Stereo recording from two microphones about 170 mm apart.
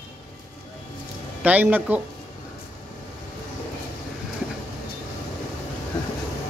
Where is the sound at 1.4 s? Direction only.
10° right (ahead or behind).